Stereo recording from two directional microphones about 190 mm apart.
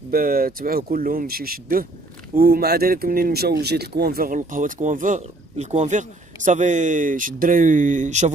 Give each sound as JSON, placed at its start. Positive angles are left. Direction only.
{"t": 0.1, "sound": "speech", "side_deg": -50}